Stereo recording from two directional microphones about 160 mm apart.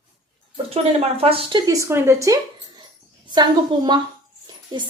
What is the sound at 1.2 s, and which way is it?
Speech, 35° right (ahead or behind).